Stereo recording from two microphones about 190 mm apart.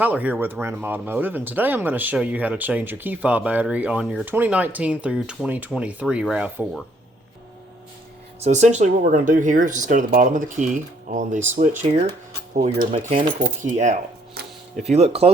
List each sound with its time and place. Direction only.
0.0 s speech: 10° right (ahead or behind)
8.4 s speech: 35° right (ahead or behind)